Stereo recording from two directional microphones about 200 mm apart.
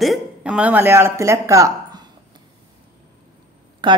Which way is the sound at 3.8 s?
25° right (ahead or behind).